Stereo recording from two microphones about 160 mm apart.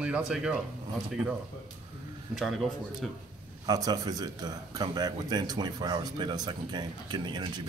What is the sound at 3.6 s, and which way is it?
A man's voice, 25° right (ahead or behind).